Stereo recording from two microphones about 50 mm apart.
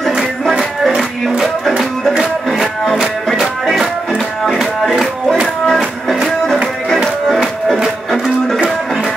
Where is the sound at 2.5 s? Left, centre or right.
Centre.